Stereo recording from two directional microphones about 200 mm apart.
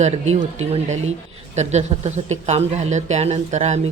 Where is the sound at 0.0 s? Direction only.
35° right (ahead or behind).